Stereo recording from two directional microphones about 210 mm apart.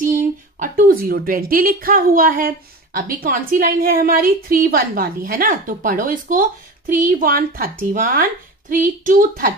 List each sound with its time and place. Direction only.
0.0 s a woman's voice: 40° right (ahead or behind)